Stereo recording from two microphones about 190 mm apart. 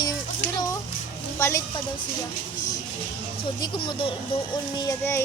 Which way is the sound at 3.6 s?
25° left (ahead or behind).